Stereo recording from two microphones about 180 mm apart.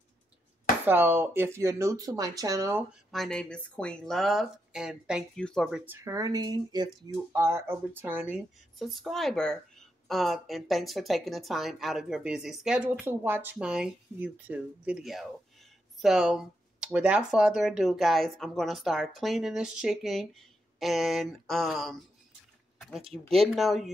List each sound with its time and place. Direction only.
0.8 s speech: 10° right (ahead or behind)
3.1 s speech: 5° left (ahead or behind)
6.0 s speech: 20° right (ahead or behind)
8.7 s speech: centre (ahead or behind)
22.8 s a sound: centre (ahead or behind)
23.1 s speech: centre (ahead or behind)